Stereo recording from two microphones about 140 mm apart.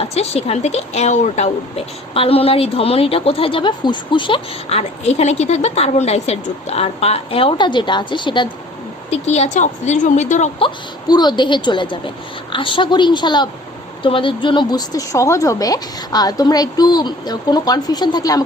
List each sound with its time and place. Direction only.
0.0 s a woman's voice: 45° left (ahead or behind)
4.8 s a woman's voice: 50° left (ahead or behind); by 8.4 s 35° left (ahead or behind)
9.0 s a woman's voice: 50° left (ahead or behind)
11.1 s a woman's voice: 30° left (ahead or behind)